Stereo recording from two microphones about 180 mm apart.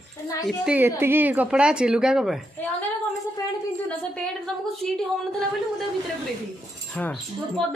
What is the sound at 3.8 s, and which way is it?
A woman's voice, 5° left (ahead or behind).